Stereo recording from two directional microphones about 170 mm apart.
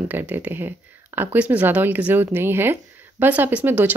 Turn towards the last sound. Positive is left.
turn(degrees=-10)  # may be behind; listen again after turning